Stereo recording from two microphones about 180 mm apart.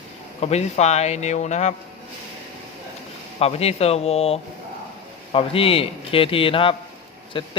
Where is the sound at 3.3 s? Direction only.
35° left (ahead or behind).